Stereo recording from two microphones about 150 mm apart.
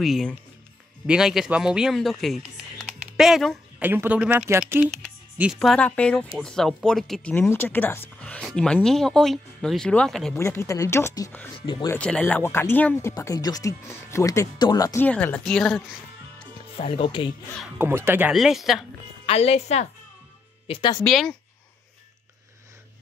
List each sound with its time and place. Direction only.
0.0 s speech: centre (ahead or behind)
3.8 s speech: 15° right (ahead or behind); by 10.3 s 5° left (ahead or behind)
10.3 s speech: 15° left (ahead or behind)
11.6 s speech: 30° left (ahead or behind)
11.9 s speech: 5° left (ahead or behind); by 15.0 s 25° left (ahead or behind)
15.0 s speech: 10° left (ahead or behind)
16.7 s speech: 40° left (ahead or behind)
17.7 s speech: 15° right (ahead or behind)
18.3 s speech: centre (ahead or behind)
19.2 s a woman's voice: 45° left (ahead or behind)
21.0 s speech: 5° left (ahead or behind)